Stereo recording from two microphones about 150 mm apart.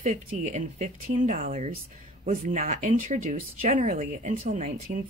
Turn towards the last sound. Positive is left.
turn(degrees=-60)  # may be behind; listen again after turning